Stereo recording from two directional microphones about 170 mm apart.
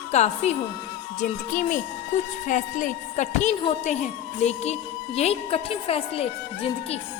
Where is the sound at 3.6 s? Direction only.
30° left (ahead or behind).